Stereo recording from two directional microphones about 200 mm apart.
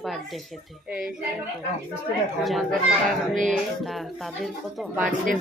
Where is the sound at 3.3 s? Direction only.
40° right (ahead or behind).